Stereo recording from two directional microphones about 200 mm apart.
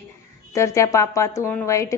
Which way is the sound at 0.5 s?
15° left (ahead or behind).